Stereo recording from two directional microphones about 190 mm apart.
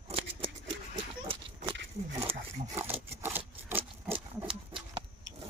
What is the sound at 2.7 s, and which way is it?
Wood, 10° right (ahead or behind).